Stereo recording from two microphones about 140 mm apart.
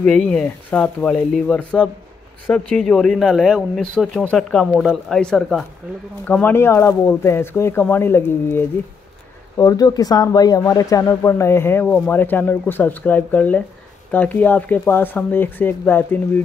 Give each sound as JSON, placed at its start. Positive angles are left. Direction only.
{"t": 0.0, "sound": "speech", "side_deg": 5}